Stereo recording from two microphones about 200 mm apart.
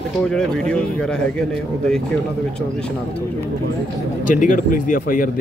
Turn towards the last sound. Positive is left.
turn(degrees=45)  # may be behind; listen again after turning